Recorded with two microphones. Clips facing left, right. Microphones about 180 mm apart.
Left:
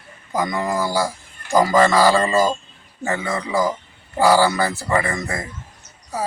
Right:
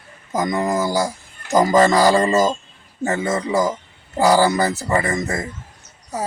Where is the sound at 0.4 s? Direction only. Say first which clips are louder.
Right 3 dB; 20° right (ahead or behind).